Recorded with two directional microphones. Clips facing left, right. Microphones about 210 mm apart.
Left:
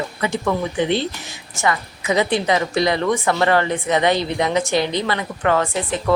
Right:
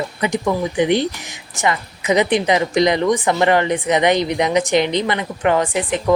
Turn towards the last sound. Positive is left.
turn(degrees=-15)  # may be behind; listen again after turning